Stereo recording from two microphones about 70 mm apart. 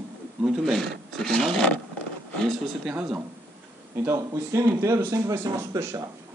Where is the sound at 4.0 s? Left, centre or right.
Right.